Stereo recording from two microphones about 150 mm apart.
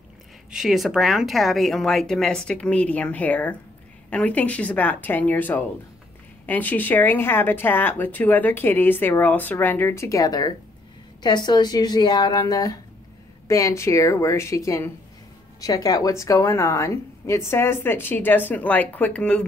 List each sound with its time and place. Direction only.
0.5 s a woman's voice: centre (ahead or behind)